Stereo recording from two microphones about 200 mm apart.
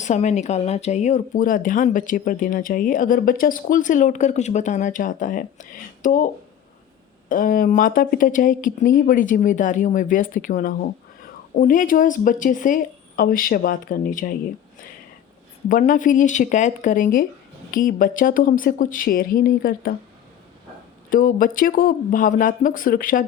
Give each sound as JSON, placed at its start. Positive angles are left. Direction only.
{"t": 0.0, "sound": "speech", "side_deg": 35}
{"t": 15.7, "sound": "speech", "side_deg": 40}
{"t": 21.1, "sound": "speech", "side_deg": 40}